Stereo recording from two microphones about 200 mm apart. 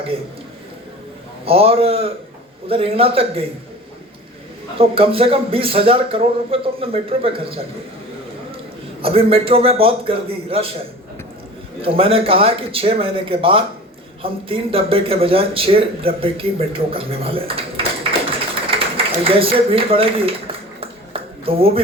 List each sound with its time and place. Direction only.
1.5 s speech: 30° right (ahead or behind)
4.8 s speech: 25° right (ahead or behind)
9.0 s speech: 30° right (ahead or behind)
11.8 s speech: 30° right (ahead or behind)
18.3 s a sound: 25° right (ahead or behind)
19.2 s speech: 30° right (ahead or behind)
21.1 s a sound: 30° right (ahead or behind)